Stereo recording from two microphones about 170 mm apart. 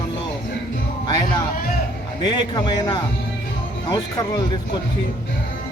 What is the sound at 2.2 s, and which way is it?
A man's voice, 25° left (ahead or behind).